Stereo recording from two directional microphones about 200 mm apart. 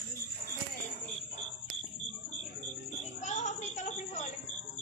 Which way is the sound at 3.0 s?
35° left (ahead or behind).